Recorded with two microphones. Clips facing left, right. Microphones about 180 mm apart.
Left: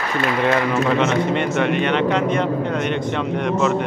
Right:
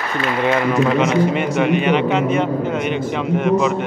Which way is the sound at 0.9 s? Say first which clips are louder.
Right 2 dB; 5° right (ahead or behind).